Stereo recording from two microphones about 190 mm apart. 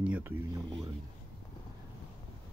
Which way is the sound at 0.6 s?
25° right (ahead or behind).